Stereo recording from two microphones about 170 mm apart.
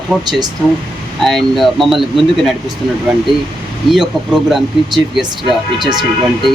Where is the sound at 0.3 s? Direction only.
25° right (ahead or behind).